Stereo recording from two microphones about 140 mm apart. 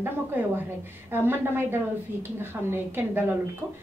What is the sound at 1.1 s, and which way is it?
A woman's voice, 15° right (ahead or behind).